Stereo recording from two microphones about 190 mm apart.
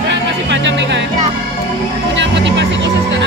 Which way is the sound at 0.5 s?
70° right (ahead or behind).